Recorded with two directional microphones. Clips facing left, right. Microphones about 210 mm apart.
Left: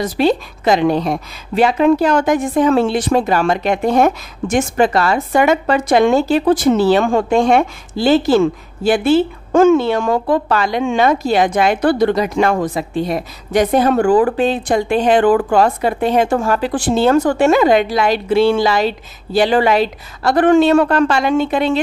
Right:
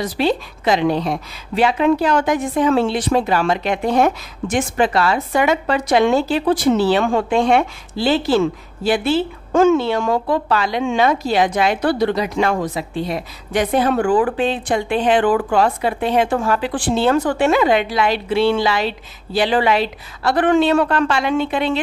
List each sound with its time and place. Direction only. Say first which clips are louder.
0.0 s a woman's voice: left 4 dB; 45° left (ahead or behind)